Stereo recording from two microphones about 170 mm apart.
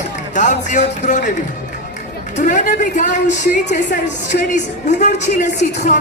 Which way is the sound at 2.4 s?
50° left (ahead or behind).